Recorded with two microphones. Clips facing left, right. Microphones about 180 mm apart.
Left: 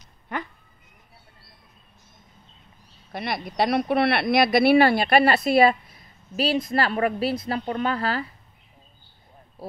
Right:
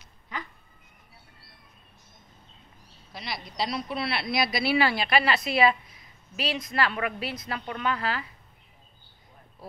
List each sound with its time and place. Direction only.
0.3 s cat: 60° left (ahead or behind)
3.1 s speech: 60° left (ahead or behind)
6.3 s a woman's voice: 30° left (ahead or behind)